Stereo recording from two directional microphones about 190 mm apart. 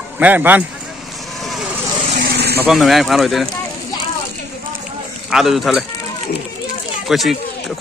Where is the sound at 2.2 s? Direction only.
60° right (ahead or behind).